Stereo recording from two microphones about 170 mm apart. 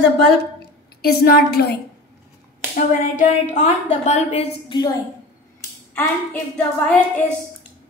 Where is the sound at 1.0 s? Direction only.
65° left (ahead or behind).